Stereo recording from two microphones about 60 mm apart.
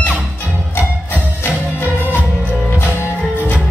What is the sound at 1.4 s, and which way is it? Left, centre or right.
Music, left.